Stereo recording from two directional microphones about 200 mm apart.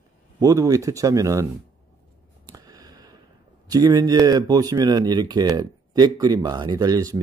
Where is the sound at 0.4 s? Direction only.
15° right (ahead or behind).